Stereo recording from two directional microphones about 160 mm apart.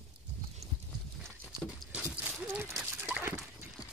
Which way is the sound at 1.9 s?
10° right (ahead or behind).